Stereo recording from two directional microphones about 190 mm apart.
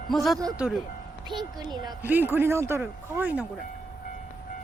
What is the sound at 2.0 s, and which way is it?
Speech, 10° right (ahead or behind).